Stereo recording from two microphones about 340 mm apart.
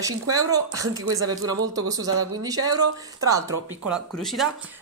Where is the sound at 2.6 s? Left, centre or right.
Right.